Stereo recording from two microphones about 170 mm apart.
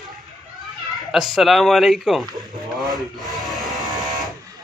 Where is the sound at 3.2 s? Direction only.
Centre (ahead or behind).